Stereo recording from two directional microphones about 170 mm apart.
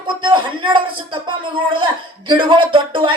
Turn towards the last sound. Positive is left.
turn(degrees=-30)  # may be behind; listen again after turning